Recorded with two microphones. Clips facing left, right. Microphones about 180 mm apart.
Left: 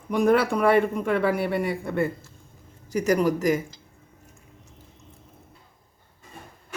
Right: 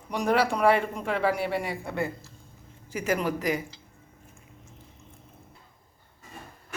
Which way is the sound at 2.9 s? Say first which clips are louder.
Left 6 dB; 40° left (ahead or behind).